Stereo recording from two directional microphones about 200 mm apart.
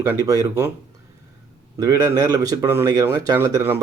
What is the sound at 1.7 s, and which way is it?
Speech, 15° right (ahead or behind).